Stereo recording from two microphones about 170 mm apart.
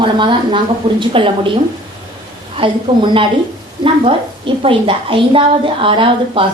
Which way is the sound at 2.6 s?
30° right (ahead or behind).